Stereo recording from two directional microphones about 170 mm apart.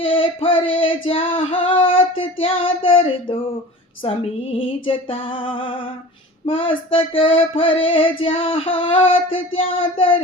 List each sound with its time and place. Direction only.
0.0 s female singing: 30° left (ahead or behind)
4.0 s child singing: 35° left (ahead or behind)